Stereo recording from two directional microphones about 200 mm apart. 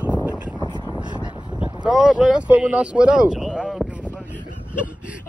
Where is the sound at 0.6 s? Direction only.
20° right (ahead or behind).